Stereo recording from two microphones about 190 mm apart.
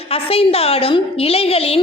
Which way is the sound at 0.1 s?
30° left (ahead or behind).